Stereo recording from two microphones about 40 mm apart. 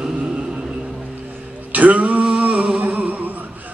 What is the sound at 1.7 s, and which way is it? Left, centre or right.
Male singing, right.